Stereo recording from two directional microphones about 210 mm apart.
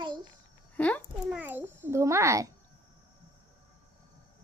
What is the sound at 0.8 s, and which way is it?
Speech, 5° left (ahead or behind).